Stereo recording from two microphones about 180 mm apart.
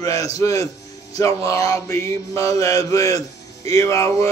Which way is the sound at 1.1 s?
20° left (ahead or behind).